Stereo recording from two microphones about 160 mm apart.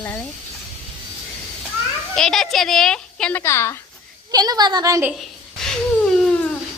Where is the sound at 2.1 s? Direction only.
5° left (ahead or behind).